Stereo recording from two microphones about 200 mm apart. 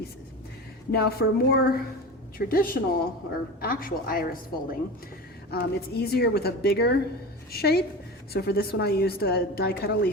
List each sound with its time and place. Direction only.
0.9 s a woman's voice: 55° left (ahead or behind)